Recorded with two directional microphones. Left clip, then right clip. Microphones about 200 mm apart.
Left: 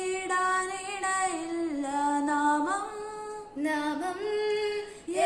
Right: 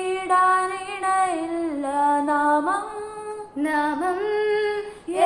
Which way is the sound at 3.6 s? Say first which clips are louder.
Right 7 dB; 10° right (ahead or behind).